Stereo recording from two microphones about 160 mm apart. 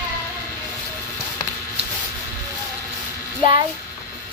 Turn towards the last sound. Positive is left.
turn(degrees=-30)  # may be behind; listen again after turning